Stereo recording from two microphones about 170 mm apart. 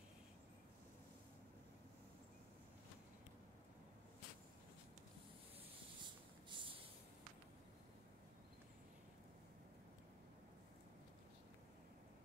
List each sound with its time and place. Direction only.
6.5 s snort: 30° right (ahead or behind)